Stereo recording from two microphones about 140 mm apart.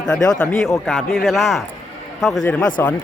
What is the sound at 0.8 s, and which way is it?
A man's voice, centre (ahead or behind).